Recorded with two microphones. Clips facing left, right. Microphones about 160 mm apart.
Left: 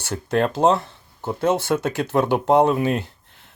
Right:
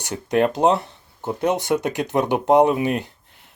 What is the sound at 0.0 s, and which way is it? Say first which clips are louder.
Speech: right 2 dB; 15° right (ahead or behind).